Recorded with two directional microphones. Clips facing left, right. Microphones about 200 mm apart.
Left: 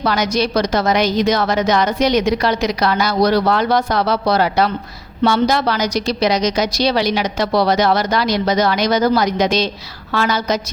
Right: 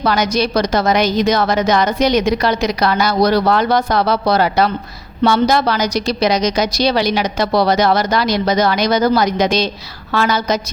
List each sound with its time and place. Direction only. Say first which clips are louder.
0.0 s a woman's voice: right 1 dB; 45° right (ahead or behind)